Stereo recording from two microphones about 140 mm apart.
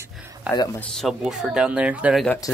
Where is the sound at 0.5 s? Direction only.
15° left (ahead or behind).